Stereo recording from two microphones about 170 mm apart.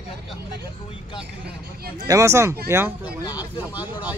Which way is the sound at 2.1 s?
15° right (ahead or behind).